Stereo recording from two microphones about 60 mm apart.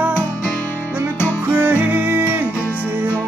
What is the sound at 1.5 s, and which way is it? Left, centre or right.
Music, right.